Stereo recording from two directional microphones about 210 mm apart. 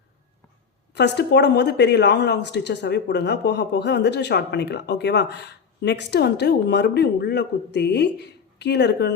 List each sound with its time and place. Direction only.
0.9 s speech: 55° left (ahead or behind)